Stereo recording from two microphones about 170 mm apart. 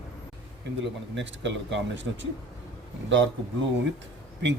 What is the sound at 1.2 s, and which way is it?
Speech, 90° right.